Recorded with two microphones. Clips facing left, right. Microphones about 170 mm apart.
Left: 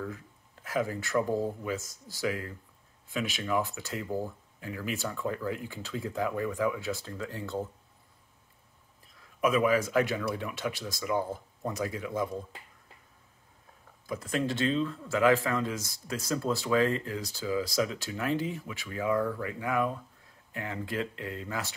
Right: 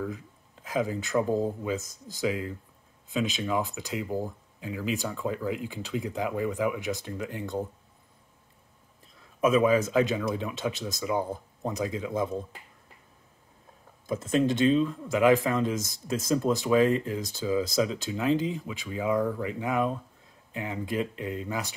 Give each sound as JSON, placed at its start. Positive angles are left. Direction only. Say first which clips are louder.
{"t": 0.0, "sound": "speech", "louder": "right 4 dB", "side_deg": -15}
{"t": 9.4, "sound": "speech", "louder": "right 3 dB", "side_deg": -25}
{"t": 14.0, "sound": "speech", "louder": "right 6 dB", "side_deg": -25}